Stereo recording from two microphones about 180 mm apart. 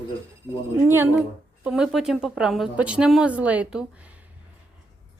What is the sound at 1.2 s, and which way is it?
Speech, centre (ahead or behind).